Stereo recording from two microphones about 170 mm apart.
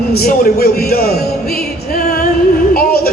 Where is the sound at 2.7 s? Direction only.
60° left (ahead or behind).